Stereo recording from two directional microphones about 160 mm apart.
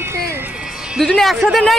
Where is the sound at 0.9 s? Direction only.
Centre (ahead or behind).